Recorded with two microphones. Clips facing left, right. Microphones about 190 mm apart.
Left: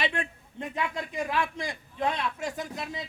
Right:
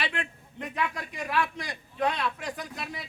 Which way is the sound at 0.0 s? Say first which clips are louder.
Left 3 dB; 20° left (ahead or behind).